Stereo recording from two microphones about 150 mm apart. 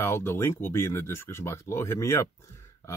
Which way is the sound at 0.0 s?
15° left (ahead or behind).